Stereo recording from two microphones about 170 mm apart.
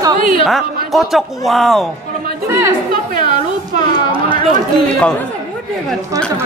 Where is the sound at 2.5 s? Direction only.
15° right (ahead or behind).